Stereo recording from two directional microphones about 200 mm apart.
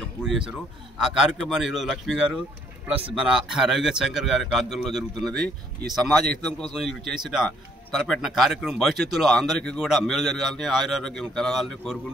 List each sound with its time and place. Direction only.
0.2 s speech: centre (ahead or behind)
2.9 s speech: 30° right (ahead or behind)
3.2 s speech: 5° right (ahead or behind)